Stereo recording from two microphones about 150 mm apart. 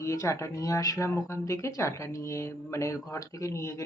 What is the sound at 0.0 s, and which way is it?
Speech, 20° left (ahead or behind).